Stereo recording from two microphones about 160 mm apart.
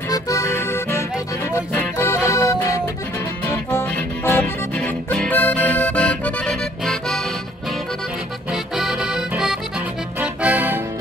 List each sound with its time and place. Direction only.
0.1 s music: 20° left (ahead or behind); by 7.2 s 5° left (ahead or behind)
8.7 s accordion: centre (ahead or behind)
10.2 s music: 10° right (ahead or behind)